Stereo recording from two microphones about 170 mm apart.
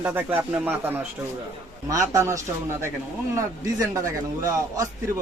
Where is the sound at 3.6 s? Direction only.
20° right (ahead or behind).